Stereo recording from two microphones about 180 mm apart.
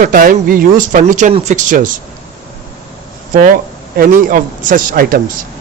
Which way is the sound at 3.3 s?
50° right (ahead or behind).